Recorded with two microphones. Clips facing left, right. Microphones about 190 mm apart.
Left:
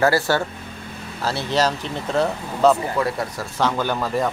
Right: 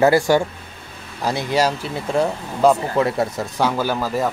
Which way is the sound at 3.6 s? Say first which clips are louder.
Right 1 dB; 5° right (ahead or behind).